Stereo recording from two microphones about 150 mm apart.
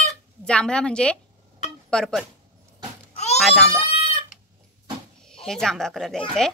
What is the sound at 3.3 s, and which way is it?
Speech, 5° left (ahead or behind).